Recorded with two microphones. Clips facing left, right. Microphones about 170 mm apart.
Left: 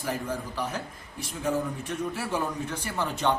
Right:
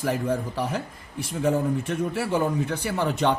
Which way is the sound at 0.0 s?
65° right (ahead or behind).